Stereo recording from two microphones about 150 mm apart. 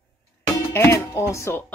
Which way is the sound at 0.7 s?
15° left (ahead or behind).